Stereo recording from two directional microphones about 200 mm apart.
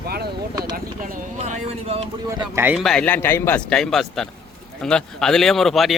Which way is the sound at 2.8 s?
5° left (ahead or behind).